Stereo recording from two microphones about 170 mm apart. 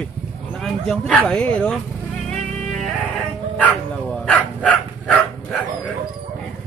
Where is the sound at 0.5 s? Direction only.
Centre (ahead or behind).